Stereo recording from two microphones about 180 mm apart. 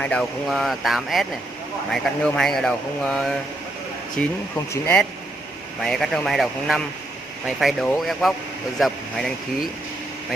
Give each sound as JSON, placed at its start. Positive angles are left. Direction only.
{"t": 0.0, "sound": "speech", "side_deg": 5}